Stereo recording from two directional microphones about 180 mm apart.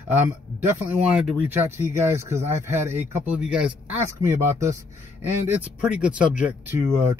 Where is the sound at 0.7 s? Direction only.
5° right (ahead or behind).